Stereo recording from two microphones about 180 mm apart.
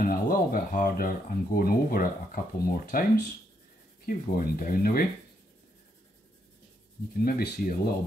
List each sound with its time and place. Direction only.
0.0 s speech: 50° left (ahead or behind)
7.2 s speech: 55° left (ahead or behind)